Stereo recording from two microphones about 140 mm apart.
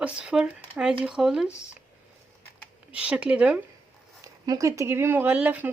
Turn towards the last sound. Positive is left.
turn(degrees=-10)  # may be behind; listen again after turning